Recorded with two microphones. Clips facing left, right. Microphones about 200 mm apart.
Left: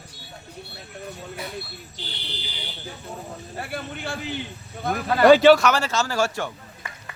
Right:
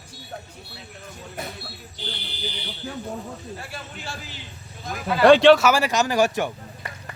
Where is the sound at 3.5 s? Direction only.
60° left (ahead or behind).